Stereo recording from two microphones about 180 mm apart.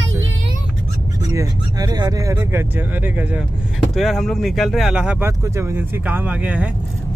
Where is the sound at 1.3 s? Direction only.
20° right (ahead or behind).